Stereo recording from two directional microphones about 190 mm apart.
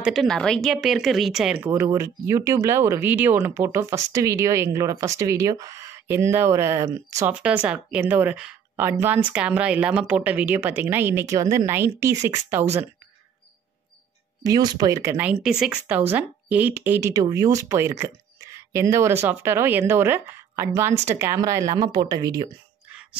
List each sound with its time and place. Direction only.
0.0 s speech: centre (ahead or behind)
14.4 s speech: 20° right (ahead or behind)